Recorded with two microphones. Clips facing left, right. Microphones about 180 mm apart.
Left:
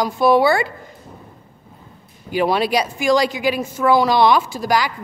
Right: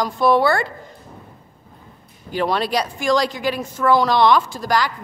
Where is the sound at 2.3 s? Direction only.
10° left (ahead or behind).